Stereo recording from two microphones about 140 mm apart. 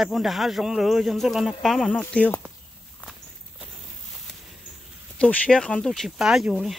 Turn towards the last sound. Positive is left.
turn(degrees=0)  # may be behind; listen again after turning